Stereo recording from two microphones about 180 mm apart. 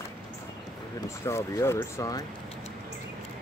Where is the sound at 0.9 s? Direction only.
15° left (ahead or behind).